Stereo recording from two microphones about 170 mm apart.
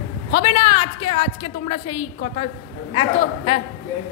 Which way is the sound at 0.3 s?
35° left (ahead or behind).